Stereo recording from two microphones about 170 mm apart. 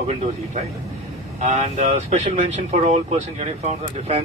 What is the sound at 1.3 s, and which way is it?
Speech, 40° right (ahead or behind).